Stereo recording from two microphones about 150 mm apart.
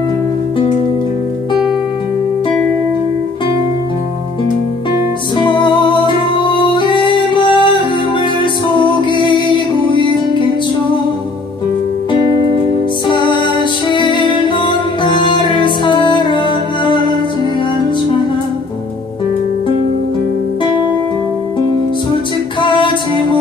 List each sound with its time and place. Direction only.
5.4 s music: 30° left (ahead or behind)
13.1 s music: 30° left (ahead or behind)
22.6 s music: 30° left (ahead or behind)